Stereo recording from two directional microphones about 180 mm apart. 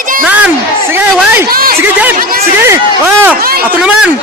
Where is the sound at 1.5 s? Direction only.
55° right (ahead or behind).